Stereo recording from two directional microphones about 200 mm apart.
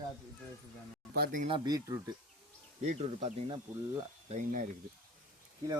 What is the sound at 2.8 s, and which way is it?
Speech, 35° right (ahead or behind).